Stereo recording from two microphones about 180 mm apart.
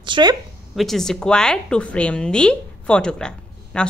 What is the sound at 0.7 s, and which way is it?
A woman's voice, centre (ahead or behind).